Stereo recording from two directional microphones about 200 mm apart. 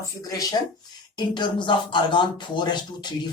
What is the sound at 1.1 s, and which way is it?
Speech, 20° left (ahead or behind).